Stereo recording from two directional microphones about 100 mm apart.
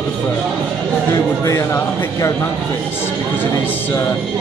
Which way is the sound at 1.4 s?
35° left (ahead or behind).